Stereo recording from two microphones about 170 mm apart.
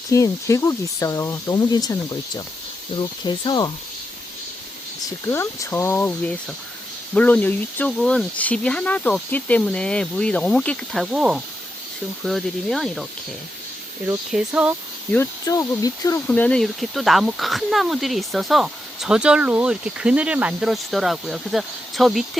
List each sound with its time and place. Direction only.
0.1 s speech: 20° left (ahead or behind)
5.0 s speech: 15° left (ahead or behind); by 13.1 s centre (ahead or behind)
14.3 s speech: 5° right (ahead or behind)
15.1 s speech: 15° left (ahead or behind)
16.3 s speech: 5° left (ahead or behind)